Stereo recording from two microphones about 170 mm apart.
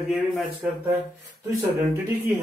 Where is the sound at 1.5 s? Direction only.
15° right (ahead or behind).